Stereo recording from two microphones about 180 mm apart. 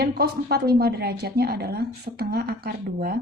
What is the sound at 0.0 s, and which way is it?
A woman's voice, 60° right (ahead or behind).